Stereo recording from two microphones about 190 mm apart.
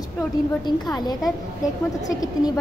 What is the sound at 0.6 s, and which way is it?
A woman's voice, 20° left (ahead or behind).